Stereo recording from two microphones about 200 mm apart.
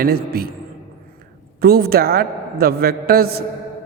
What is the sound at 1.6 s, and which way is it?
A man's voice, 50° right (ahead or behind).